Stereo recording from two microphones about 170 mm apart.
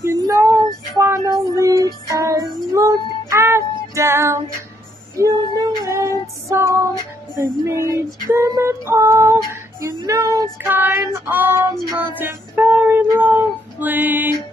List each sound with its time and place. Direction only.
0.0 s child singing: 15° right (ahead or behind)
0.9 s female singing: 20° right (ahead or behind)
2.0 s child singing: 20° right (ahead or behind)
5.6 s female singing: 15° right (ahead or behind)
7.3 s music: 15° right (ahead or behind)
8.3 s female singing: 15° right (ahead or behind)
11.2 s music: 15° right (ahead or behind)
12.2 s female singing: 10° right (ahead or behind)